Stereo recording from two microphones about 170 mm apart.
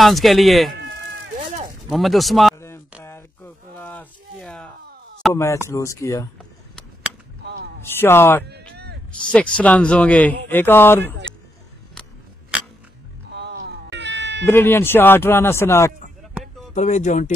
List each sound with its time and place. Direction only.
0.0 s speech: centre (ahead or behind)
1.9 s speech: centre (ahead or behind)
3.0 s a sound: 15° left (ahead or behind)
5.3 s speech: 15° left (ahead or behind)
7.8 s speech: 15° left (ahead or behind)
11.9 s a sound: 5° left (ahead or behind)
13.3 s cat: 80° right
14.4 s speech: 15° left (ahead or behind)
16.7 s speech: 45° left (ahead or behind)